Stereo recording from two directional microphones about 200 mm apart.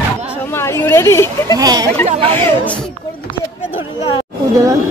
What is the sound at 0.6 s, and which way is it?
Speech, 10° left (ahead or behind).